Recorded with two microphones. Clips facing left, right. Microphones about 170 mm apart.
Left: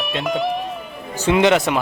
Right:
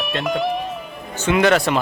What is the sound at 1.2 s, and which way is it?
Speech, 25° left (ahead or behind).